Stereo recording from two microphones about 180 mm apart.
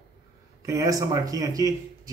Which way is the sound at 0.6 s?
20° right (ahead or behind).